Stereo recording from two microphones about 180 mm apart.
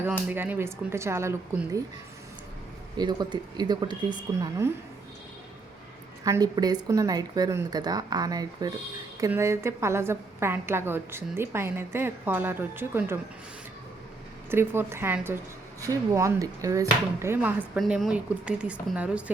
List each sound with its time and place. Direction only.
0.0 s a woman's voice: 10° right (ahead or behind)
3.0 s speech: 25° right (ahead or behind)
6.2 s a woman's voice: 20° right (ahead or behind)
14.5 s a woman's voice: 10° right (ahead or behind)
17.7 s a woman's voice: centre (ahead or behind)